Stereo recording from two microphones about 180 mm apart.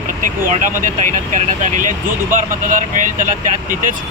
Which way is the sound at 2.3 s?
45° right (ahead or behind).